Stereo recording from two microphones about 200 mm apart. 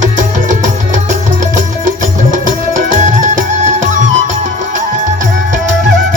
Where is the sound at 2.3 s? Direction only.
40° right (ahead or behind).